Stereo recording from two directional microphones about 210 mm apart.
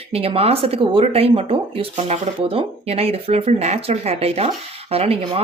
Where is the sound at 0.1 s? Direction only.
25° right (ahead or behind).